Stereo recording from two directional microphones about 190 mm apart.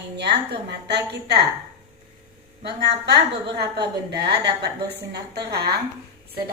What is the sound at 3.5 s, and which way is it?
A woman's voice, 60° right (ahead or behind).